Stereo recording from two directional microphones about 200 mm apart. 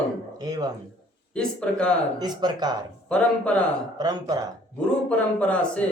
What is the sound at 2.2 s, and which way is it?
Speech, 20° right (ahead or behind).